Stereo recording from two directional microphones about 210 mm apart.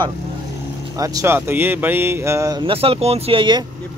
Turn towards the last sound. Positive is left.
turn(degrees=-25)  # may be behind; listen again after turning